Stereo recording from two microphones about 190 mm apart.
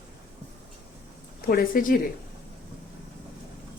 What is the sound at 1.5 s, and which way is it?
Speech, 50° left (ahead or behind).